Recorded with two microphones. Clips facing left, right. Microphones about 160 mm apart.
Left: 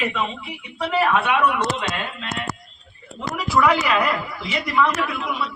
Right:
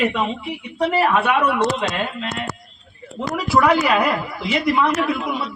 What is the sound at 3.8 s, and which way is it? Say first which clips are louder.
A man's voice: right 3 dB; 40° right (ahead or behind).